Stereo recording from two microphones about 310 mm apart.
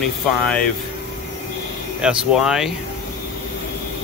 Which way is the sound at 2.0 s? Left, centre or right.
Centre.